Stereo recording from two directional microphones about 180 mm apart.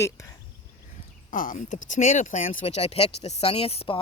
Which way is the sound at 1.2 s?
50° left (ahead or behind).